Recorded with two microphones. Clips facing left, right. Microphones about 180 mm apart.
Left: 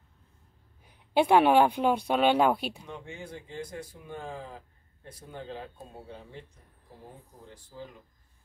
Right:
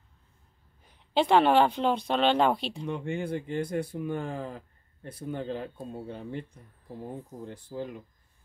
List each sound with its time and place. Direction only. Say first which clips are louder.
0.8 s speech: left 1 dB; 10° left (ahead or behind)
2.8 s speech: right 10 dB; 65° right (ahead or behind)
7.4 s speech: right 7 dB; 60° right (ahead or behind)